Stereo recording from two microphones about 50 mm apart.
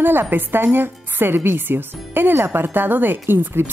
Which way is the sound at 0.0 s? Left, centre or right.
Right.